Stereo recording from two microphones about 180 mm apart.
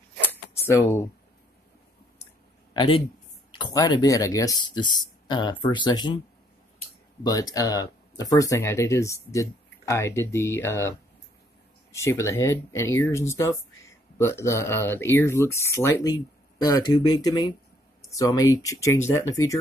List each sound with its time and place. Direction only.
0.2 s a sound: 10° left (ahead or behind)
2.7 s speech: 25° left (ahead or behind)
7.2 s speech: 20° left (ahead or behind)